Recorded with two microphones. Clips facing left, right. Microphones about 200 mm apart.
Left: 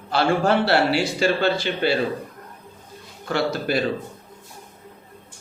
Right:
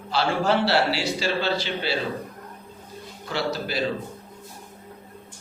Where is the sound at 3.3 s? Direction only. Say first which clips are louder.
Left 5 dB; 55° left (ahead or behind).